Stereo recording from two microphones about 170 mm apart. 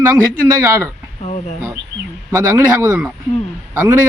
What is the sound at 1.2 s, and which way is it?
Speech, 45° left (ahead or behind).